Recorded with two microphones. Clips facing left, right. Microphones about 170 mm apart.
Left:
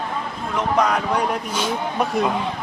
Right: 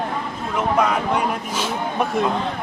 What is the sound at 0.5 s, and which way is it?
Speech, 5° right (ahead or behind).